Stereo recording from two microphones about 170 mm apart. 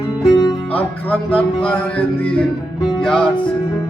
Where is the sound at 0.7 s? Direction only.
10° left (ahead or behind).